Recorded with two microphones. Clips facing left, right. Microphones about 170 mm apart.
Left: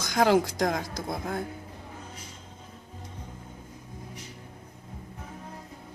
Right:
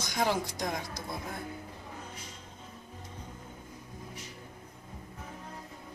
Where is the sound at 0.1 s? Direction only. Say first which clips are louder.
Left 9 dB; 90° left.